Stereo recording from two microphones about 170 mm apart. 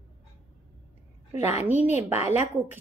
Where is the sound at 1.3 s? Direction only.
40° left (ahead or behind).